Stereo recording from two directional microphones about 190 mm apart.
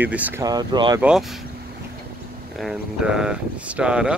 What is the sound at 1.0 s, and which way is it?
Speech, centre (ahead or behind).